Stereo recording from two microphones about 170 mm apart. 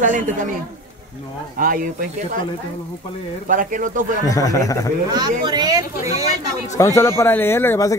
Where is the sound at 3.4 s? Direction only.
50° right (ahead or behind).